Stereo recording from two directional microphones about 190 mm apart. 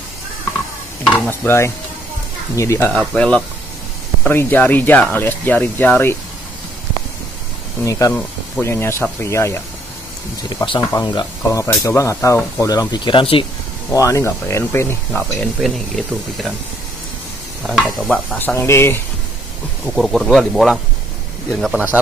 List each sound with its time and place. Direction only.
1.0 s stir: 10° left (ahead or behind)
2.5 s speech: 15° left (ahead or behind)
2.9 s speech: 5° left (ahead or behind)
7.8 s speech: 15° left (ahead or behind)
10.5 s speech: 25° left (ahead or behind)
10.8 s speech: 15° left (ahead or behind)
13.9 s speech: 15° left (ahead or behind)
17.6 s speech: centre (ahead or behind)
20.0 s speech: centre (ahead or behind)